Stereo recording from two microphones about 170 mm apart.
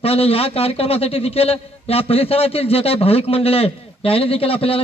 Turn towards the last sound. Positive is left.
turn(degrees=35)  # may be behind; listen again after turning